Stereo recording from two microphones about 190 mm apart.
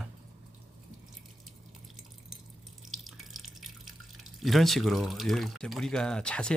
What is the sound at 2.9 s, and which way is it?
Water, centre (ahead or behind).